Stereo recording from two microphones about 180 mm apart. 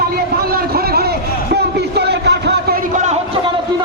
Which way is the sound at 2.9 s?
40° right (ahead or behind).